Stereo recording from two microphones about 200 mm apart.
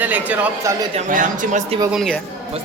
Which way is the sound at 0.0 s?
10° right (ahead or behind).